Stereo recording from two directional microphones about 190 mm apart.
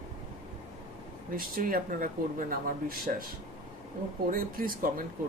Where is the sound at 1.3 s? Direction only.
50° right (ahead or behind).